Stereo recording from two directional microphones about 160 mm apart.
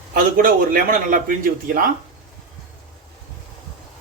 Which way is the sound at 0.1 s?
60° right (ahead or behind).